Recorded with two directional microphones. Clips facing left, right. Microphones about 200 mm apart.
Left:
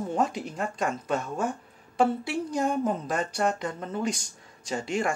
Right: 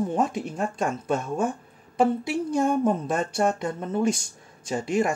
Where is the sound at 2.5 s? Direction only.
25° right (ahead or behind).